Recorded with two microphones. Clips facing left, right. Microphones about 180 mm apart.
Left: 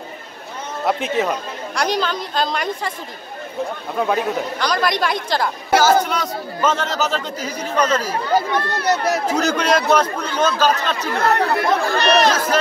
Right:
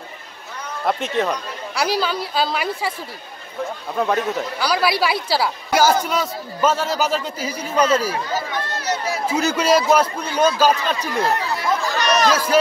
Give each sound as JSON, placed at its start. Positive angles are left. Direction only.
{"t": 0.8, "sound": "a woman's voice", "side_deg": 0}
{"t": 3.9, "sound": "speech", "side_deg": 0}
{"t": 8.2, "sound": "speech", "side_deg": 65}
{"t": 9.3, "sound": "speech", "side_deg": -5}
{"t": 11.1, "sound": "speech", "side_deg": 60}